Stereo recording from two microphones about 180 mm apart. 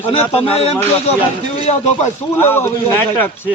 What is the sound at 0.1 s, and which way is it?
Speech, 30° left (ahead or behind).